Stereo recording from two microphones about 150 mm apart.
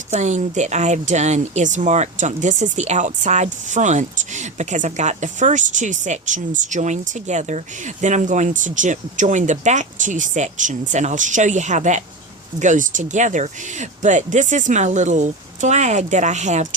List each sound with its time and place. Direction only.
0.1 s speech: 50° right (ahead or behind)